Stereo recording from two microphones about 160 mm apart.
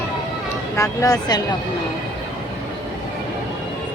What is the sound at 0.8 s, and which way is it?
Speech, 20° left (ahead or behind).